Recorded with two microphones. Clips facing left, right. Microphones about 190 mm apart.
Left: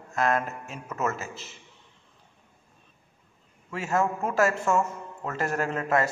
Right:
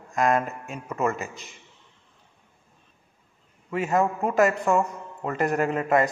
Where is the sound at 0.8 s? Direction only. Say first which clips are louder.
Right 4 dB; 15° right (ahead or behind).